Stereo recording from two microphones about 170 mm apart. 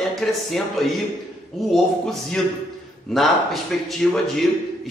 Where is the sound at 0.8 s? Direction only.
Centre (ahead or behind).